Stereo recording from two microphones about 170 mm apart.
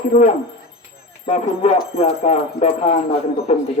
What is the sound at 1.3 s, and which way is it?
A man's voice, 35° left (ahead or behind).